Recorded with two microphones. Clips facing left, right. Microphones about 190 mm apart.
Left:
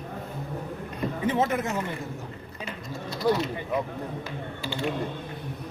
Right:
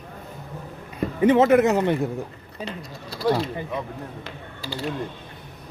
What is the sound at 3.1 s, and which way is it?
Speech, 30° right (ahead or behind).